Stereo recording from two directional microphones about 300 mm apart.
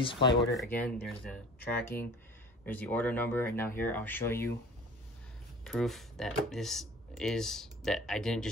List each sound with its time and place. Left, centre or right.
0.0 s speech: centre
0.4 s speech: centre
5.6 s speech: centre